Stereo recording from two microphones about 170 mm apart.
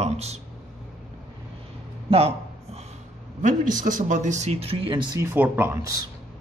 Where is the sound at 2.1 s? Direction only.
35° right (ahead or behind).